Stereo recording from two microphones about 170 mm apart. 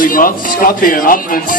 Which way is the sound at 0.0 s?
55° left (ahead or behind).